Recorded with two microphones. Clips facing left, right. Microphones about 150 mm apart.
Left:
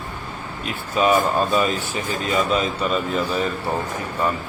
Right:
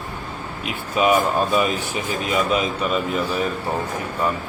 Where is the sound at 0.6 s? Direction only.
10° right (ahead or behind).